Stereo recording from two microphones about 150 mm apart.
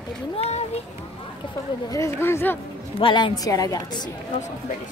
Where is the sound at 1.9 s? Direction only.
20° left (ahead or behind).